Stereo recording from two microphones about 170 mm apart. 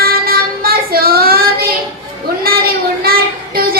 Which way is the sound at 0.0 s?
60° right (ahead or behind).